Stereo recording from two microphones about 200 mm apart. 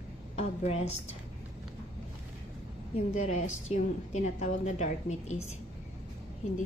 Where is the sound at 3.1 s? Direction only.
35° left (ahead or behind).